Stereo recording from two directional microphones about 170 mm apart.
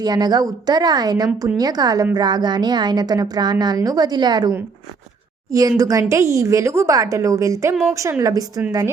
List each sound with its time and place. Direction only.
0.0 s a woman's voice: 25° right (ahead or behind)